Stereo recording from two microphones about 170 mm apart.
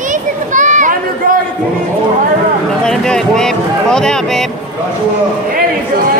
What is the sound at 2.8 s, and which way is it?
Speech, 5° left (ahead or behind).